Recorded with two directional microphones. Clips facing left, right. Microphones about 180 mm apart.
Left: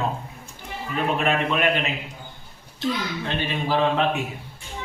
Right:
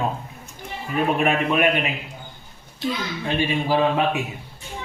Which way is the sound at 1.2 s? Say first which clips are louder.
Right 2 dB; 10° right (ahead or behind).